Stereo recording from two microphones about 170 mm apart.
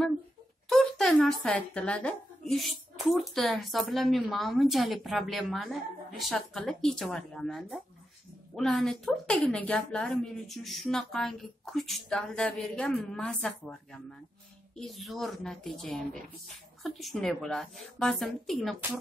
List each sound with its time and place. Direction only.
0.7 s speech: centre (ahead or behind)
14.8 s speech: centre (ahead or behind)